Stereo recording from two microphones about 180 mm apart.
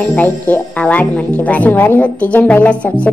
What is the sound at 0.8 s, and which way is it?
A woman's voice, 5° left (ahead or behind).